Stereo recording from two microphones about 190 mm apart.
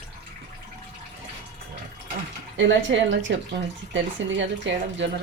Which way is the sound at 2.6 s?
75° right (ahead or behind).